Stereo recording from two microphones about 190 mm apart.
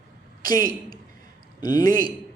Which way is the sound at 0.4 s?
20° left (ahead or behind).